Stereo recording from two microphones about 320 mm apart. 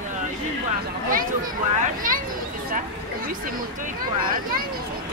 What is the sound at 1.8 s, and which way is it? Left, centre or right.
Speech, right.